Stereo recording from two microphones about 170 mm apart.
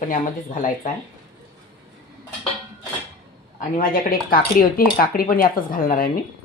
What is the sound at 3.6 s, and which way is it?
Speech, 55° left (ahead or behind).